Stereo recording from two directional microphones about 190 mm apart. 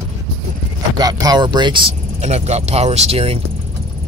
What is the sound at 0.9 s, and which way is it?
Speech, 20° right (ahead or behind).